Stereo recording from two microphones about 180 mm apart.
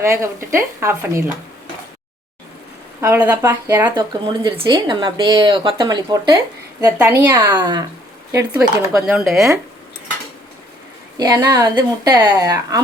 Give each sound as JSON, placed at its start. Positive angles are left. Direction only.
{"t": 0.0, "sound": "speech", "side_deg": -15}
{"t": 3.0, "sound": "speech", "side_deg": -15}
{"t": 11.2, "sound": "speech", "side_deg": -20}